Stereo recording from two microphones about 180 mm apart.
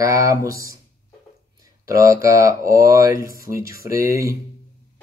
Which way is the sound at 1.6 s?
15° right (ahead or behind).